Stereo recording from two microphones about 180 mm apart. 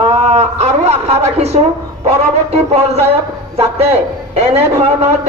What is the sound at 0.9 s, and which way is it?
A man's voice, 35° right (ahead or behind).